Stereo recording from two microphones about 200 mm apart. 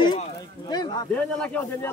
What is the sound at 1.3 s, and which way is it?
Speech, 10° left (ahead or behind).